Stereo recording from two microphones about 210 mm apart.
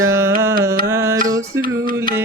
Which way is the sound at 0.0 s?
10° right (ahead or behind).